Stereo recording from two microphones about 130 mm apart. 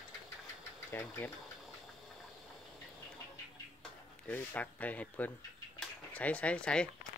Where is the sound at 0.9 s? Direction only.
15° left (ahead or behind).